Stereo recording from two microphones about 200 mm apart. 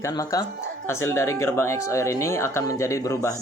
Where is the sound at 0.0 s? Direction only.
15° left (ahead or behind).